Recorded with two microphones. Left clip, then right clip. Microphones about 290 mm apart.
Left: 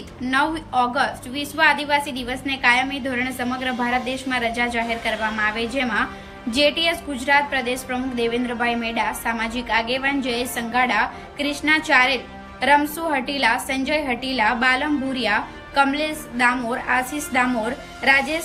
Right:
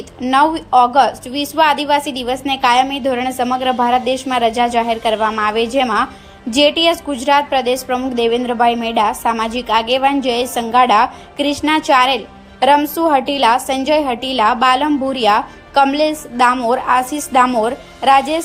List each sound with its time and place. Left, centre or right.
0.2 s a woman's voice: centre